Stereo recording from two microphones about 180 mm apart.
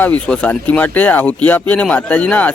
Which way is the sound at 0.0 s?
10° left (ahead or behind).